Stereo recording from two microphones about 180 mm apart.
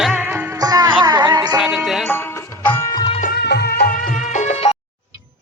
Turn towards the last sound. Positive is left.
turn(degrees=35)  # may be behind; listen again after turning